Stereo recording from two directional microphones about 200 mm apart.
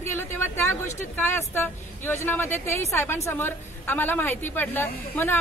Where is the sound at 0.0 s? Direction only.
10° left (ahead or behind).